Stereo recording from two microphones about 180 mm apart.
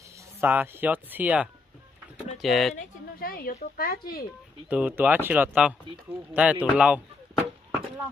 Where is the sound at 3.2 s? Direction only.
55° left (ahead or behind).